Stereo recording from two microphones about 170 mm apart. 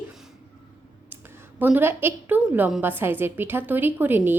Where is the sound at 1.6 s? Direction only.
10° right (ahead or behind).